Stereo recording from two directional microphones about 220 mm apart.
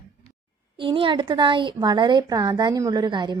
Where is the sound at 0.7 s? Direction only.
25° right (ahead or behind).